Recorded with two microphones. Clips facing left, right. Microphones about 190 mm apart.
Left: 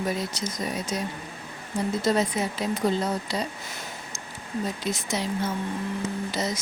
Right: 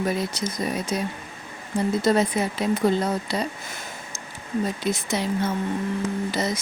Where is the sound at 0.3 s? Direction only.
60° right (ahead or behind).